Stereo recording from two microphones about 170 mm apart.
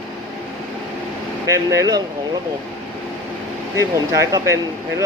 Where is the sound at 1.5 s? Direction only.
20° right (ahead or behind).